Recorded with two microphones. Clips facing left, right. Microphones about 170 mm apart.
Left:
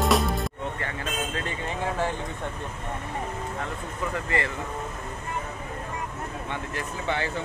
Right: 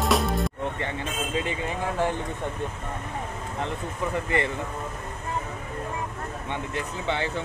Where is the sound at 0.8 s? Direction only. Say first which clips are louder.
Right 1 dB; 15° right (ahead or behind).